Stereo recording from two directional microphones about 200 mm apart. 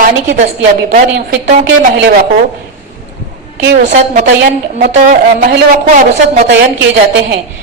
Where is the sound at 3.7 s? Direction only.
35° right (ahead or behind).